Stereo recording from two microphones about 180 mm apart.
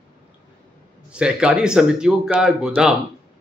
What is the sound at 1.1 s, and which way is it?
A woman's voice, 5° right (ahead or behind).